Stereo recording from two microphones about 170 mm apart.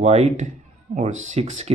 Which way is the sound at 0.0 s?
40° right (ahead or behind).